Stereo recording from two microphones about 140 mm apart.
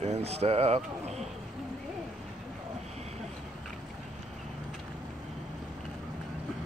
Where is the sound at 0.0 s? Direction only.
50° right (ahead or behind).